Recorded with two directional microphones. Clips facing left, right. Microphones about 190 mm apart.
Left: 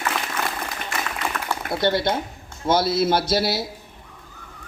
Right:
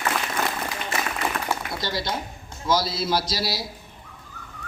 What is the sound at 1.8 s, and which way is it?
A man's voice, 55° left (ahead or behind).